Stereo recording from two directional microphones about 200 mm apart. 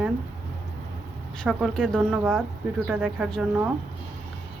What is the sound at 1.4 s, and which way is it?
Speech, centre (ahead or behind).